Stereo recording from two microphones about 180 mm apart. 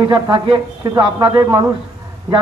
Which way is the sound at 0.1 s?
25° right (ahead or behind).